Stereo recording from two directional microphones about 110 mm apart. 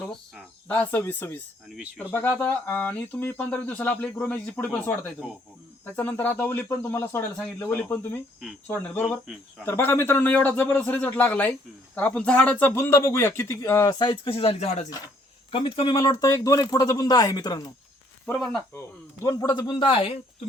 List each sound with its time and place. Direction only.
0.7 s speech: 15° left (ahead or behind)
5.8 s a man's voice: 15° left (ahead or behind)
14.0 s speech: 50° left (ahead or behind); by 14.8 s 70° left (ahead or behind)
15.5 s speech: 55° left (ahead or behind)
16.0 s speech: 35° left (ahead or behind)
19.2 s speech: 30° left (ahead or behind); by 20.1 s 50° left (ahead or behind)